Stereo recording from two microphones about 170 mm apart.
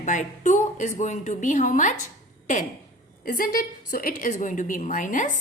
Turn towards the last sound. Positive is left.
turn(degrees=50)  # may be behind; listen again after turning